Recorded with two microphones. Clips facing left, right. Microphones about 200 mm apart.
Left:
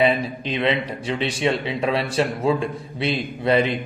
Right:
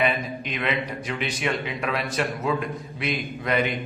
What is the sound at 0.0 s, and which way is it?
A man's voice, 30° left (ahead or behind).